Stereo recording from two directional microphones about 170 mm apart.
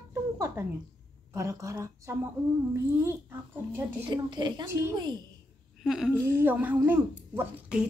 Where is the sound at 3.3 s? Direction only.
15° right (ahead or behind).